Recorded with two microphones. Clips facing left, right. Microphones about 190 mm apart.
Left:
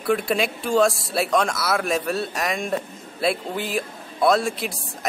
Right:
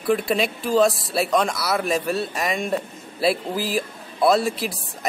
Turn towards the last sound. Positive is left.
turn(degrees=0)  # may be behind; listen again after turning